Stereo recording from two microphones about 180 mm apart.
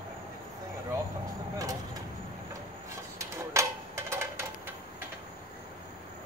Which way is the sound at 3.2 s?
15° right (ahead or behind).